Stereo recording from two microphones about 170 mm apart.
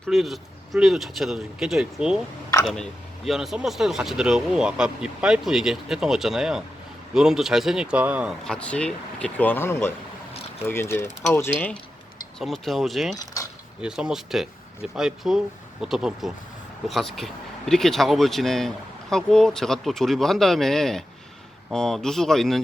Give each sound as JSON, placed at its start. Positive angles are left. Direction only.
{"t": 0.1, "sound": "speech", "side_deg": 0}
{"t": 3.2, "sound": "speech", "side_deg": 0}
{"t": 8.4, "sound": "speech", "side_deg": 5}
{"t": 12.4, "sound": "speech", "side_deg": 0}
{"t": 13.1, "sound": "keys jangling", "side_deg": 20}
{"t": 13.8, "sound": "speech", "side_deg": -5}